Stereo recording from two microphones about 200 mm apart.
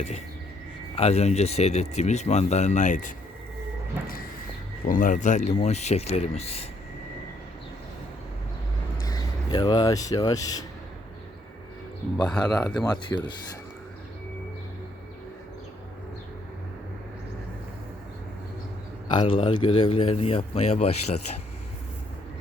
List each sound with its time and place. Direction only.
0.9 s speech: 30° left (ahead or behind)
4.9 s speech: 40° left (ahead or behind)
9.0 s speech: 20° left (ahead or behind)
12.1 s speech: 5° left (ahead or behind)
19.1 s a man's voice: 25° left (ahead or behind)